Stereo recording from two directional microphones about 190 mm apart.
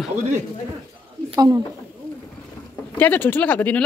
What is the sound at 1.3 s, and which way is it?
Speech, 15° right (ahead or behind).